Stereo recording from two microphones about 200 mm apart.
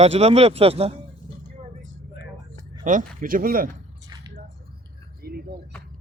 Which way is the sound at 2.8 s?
40° right (ahead or behind).